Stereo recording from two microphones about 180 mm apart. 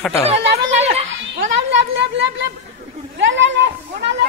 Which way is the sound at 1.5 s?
80° right.